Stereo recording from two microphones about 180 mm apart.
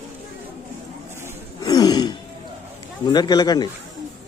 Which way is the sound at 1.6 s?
20° left (ahead or behind).